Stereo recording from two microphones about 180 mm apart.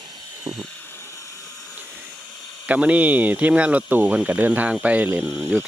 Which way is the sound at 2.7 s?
10° right (ahead or behind).